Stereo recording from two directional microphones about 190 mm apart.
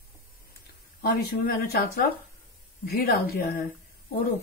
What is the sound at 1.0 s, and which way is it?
Speech, 55° left (ahead or behind).